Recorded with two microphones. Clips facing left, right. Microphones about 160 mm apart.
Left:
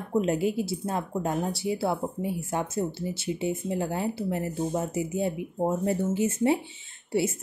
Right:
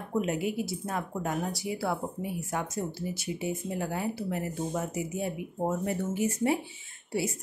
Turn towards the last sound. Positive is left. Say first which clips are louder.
# left 5 dB
turn(degrees=25)  # may be behind; listen again after turning